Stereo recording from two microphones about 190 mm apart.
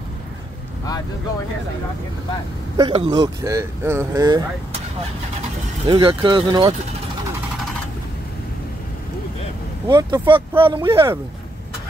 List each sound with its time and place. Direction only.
2.8 s speech: 25° right (ahead or behind)
5.9 s speech: 25° right (ahead or behind)
9.8 s speech: 20° right (ahead or behind)